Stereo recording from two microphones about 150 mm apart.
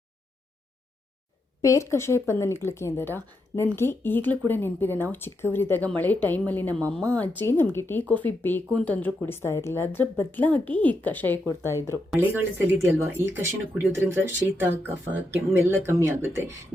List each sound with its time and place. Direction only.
1.6 s a woman's voice: 20° left (ahead or behind)
12.2 s speech: 15° right (ahead or behind)